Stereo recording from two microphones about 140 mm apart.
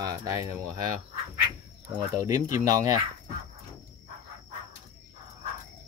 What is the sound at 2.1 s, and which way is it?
Speech, 25° right (ahead or behind).